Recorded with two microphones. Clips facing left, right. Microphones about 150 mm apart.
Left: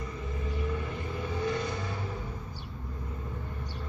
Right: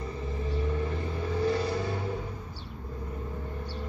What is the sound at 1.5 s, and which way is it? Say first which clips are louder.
Vehicle: right 4 dB; 30° right (ahead or behind).